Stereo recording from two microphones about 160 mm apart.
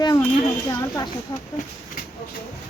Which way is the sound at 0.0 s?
25° left (ahead or behind).